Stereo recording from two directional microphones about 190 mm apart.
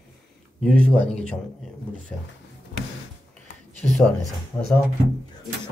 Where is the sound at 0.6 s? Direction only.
5° left (ahead or behind).